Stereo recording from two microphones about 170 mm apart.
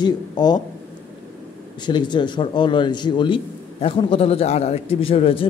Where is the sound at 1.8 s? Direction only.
25° left (ahead or behind).